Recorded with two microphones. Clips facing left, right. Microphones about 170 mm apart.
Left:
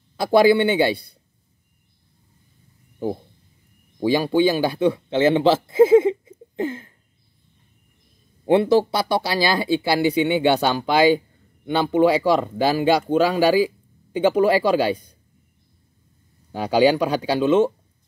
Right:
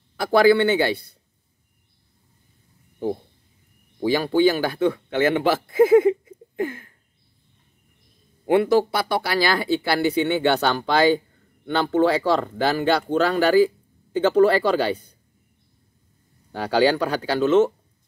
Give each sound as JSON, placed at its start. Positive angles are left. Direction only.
{"t": 0.2, "sound": "speech", "side_deg": 20}
{"t": 4.0, "sound": "speech", "side_deg": 15}
{"t": 8.5, "sound": "speech", "side_deg": 20}
{"t": 16.5, "sound": "speech", "side_deg": 15}